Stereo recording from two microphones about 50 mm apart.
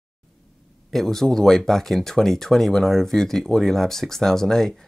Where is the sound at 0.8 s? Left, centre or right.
Centre.